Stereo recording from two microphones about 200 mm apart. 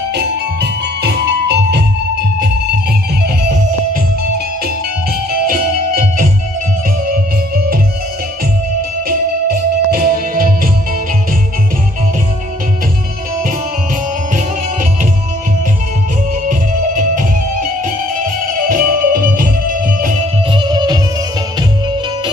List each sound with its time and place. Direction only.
0.1 s music: 55° right (ahead or behind)
5.3 s music: 45° right (ahead or behind)
9.5 s music: 45° right (ahead or behind)
16.4 s music: 40° right (ahead or behind)
20.5 s music: 20° right (ahead or behind)